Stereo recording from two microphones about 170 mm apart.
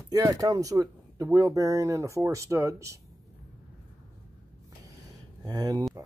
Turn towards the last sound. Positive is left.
turn(degrees=-20)  # may be behind; listen again after turning